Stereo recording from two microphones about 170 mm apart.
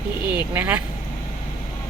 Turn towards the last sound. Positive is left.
turn(degrees=-10)  # may be behind; listen again after turning